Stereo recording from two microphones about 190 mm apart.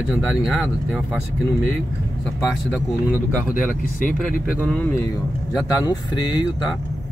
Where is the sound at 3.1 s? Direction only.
10° right (ahead or behind).